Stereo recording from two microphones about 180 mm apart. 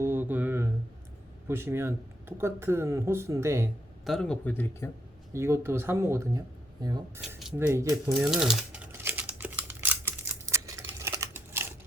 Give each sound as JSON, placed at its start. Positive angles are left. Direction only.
{"t": 0.0, "sound": "a sound", "side_deg": -10}
{"t": 1.5, "sound": "speech", "side_deg": -15}
{"t": 4.0, "sound": "speech", "side_deg": 0}
{"t": 5.3, "sound": "speech", "side_deg": -15}
{"t": 7.2, "sound": "speech", "side_deg": 0}
{"t": 7.7, "sound": "typing", "side_deg": -15}